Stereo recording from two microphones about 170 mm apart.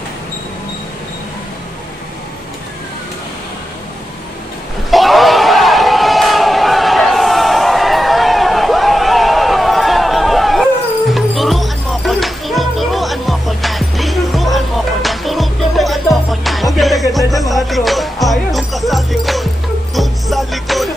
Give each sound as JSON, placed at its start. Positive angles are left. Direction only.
{"t": 4.9, "sound": "crowd", "side_deg": 0}
{"t": 17.5, "sound": "music", "side_deg": 0}